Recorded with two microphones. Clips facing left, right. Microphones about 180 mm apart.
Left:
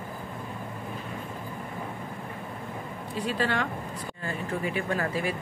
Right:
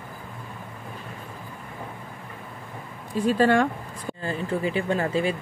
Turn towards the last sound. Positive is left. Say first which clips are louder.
# right 5 dB
turn(degrees=-25)  # may be behind; listen again after turning